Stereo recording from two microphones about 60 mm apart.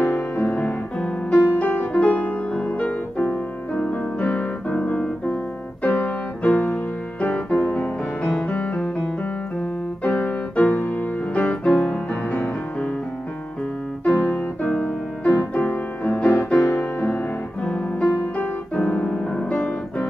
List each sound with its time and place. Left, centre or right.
0.0 s music: left
0.9 s music: centre
1.5 s music: left; by 9.1 s centre
10.0 s music: left
10.9 s piano: left
11.7 s music: centre
14.2 s music: left
18.1 s piano: left